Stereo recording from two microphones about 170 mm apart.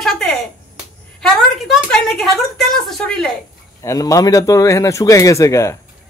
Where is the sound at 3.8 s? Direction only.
20° left (ahead or behind).